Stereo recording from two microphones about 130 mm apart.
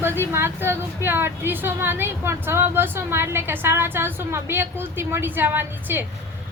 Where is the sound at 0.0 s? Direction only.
20° right (ahead or behind).